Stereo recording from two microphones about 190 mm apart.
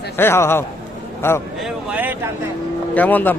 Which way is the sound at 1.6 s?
5° right (ahead or behind).